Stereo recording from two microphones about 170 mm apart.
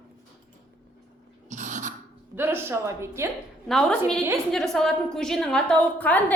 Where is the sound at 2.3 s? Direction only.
15° right (ahead or behind).